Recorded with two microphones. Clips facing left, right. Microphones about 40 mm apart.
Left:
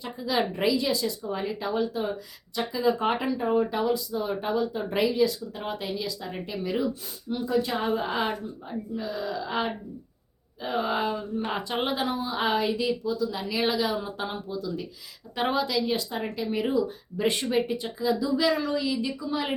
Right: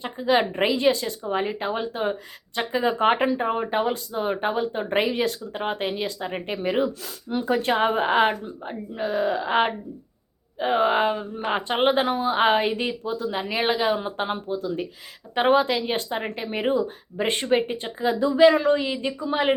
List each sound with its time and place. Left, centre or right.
0.0 s speech: right